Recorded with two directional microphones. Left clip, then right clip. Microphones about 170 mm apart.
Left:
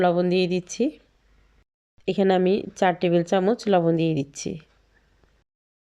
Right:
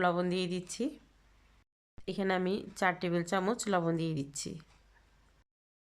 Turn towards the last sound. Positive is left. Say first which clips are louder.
# left 11 dB
turn(degrees=15)  # may be behind; listen again after turning